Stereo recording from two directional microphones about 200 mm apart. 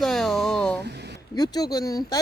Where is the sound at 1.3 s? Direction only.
20° left (ahead or behind).